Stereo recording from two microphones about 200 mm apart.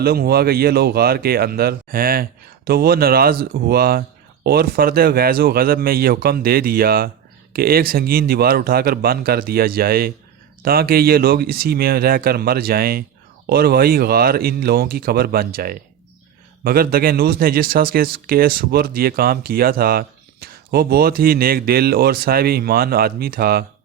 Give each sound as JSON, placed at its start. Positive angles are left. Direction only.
{"t": 0.0, "sound": "speech", "side_deg": -50}